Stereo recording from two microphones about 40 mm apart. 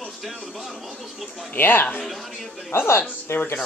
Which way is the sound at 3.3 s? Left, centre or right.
Left.